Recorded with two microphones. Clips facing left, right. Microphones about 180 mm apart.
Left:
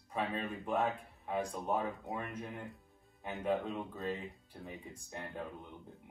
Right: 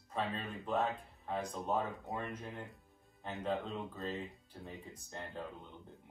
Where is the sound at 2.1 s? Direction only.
Centre (ahead or behind).